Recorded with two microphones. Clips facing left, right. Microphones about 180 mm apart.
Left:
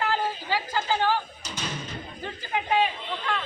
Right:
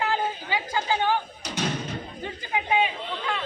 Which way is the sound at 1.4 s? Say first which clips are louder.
Right 6 dB; 65° right (ahead or behind).